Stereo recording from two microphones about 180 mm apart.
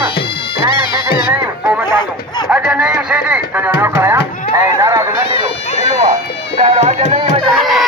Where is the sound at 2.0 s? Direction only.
25° left (ahead or behind).